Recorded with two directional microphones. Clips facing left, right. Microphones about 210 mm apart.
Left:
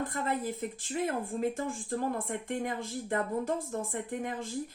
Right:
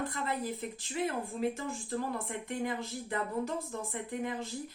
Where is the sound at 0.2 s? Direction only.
45° left (ahead or behind).